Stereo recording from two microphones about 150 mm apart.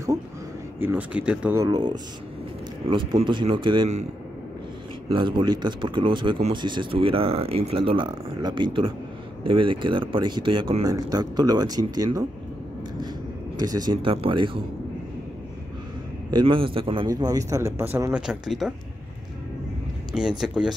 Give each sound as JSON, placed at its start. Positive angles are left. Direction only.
{"t": 0.7, "sound": "speech", "side_deg": -10}
{"t": 1.6, "sound": "a man's voice", "side_deg": -25}
{"t": 5.1, "sound": "speech", "side_deg": -35}
{"t": 13.6, "sound": "a man's voice", "side_deg": -25}
{"t": 16.3, "sound": "a man's voice", "side_deg": -30}
{"t": 18.1, "sound": "speech", "side_deg": -5}
{"t": 20.2, "sound": "speech", "side_deg": -5}